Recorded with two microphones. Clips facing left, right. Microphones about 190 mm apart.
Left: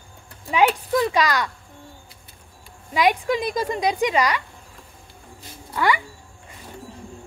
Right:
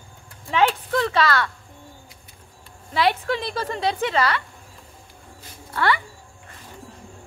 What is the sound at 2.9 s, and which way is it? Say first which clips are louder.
Speech: left 2 dB; 15° left (ahead or behind).